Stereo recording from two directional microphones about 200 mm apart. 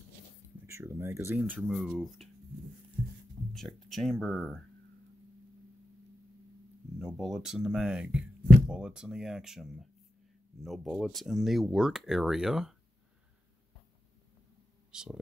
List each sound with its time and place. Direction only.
0.7 s speech: 15° right (ahead or behind)
3.5 s speech: centre (ahead or behind)
7.0 s speech: centre (ahead or behind)
14.9 s a sound: 5° right (ahead or behind)